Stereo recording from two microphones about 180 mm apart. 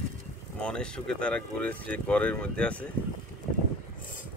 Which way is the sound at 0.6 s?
5° left (ahead or behind).